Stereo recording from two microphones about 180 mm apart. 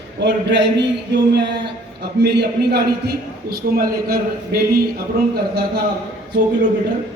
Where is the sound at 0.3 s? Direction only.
70° right (ahead or behind); by 4.6 s 55° right (ahead or behind).